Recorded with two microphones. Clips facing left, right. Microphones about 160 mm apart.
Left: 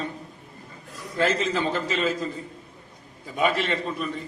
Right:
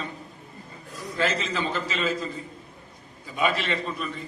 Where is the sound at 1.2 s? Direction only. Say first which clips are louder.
Left 3 dB; 50° left (ahead or behind).